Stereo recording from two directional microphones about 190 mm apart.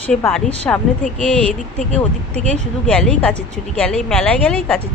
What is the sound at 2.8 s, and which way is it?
Speech, 5° left (ahead or behind).